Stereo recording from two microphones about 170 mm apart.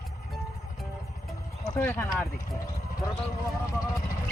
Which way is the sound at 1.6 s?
15° left (ahead or behind).